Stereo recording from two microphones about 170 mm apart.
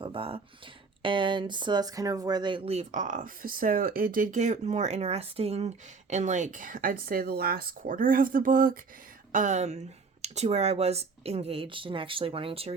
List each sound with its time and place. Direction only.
0.0 s speech: 30° right (ahead or behind)